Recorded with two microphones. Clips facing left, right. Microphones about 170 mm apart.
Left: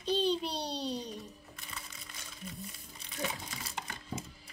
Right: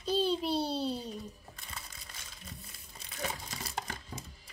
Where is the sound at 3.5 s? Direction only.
40° right (ahead or behind).